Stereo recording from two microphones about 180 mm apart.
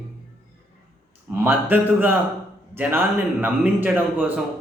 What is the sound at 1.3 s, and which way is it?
A man's voice, 10° right (ahead or behind).